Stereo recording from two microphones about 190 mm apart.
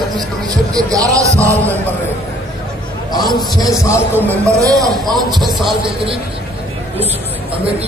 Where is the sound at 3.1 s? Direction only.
20° left (ahead or behind).